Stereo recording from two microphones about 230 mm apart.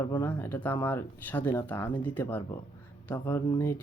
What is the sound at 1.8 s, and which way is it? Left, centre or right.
Speech, left.